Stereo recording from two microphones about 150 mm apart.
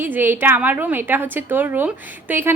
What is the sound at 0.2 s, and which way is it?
A woman's voice, 15° right (ahead or behind).